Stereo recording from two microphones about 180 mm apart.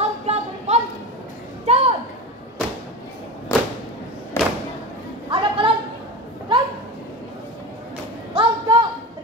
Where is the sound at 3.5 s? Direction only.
15° left (ahead or behind).